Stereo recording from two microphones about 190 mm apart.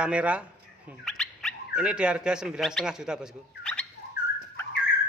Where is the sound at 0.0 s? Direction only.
5° right (ahead or behind).